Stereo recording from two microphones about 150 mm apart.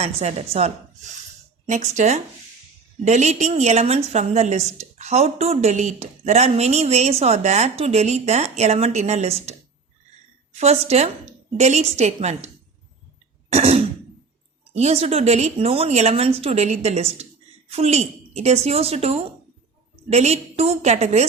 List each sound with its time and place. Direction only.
0.0 s a woman's voice: 45° right (ahead or behind)
1.7 s a woman's voice: 50° right (ahead or behind)
13.5 s throat clearing: 45° right (ahead or behind)
14.8 s a woman's voice: 45° right (ahead or behind)